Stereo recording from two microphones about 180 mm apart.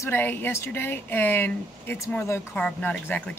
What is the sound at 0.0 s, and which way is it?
Speech, 10° left (ahead or behind).